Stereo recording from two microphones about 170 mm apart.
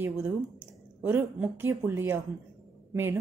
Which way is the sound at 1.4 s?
15° right (ahead or behind).